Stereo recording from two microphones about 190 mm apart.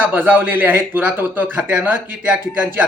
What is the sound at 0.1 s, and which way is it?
A man's voice, 10° right (ahead or behind).